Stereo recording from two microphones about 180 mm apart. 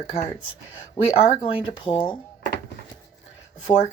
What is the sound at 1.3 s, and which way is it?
Speech, 30° left (ahead or behind).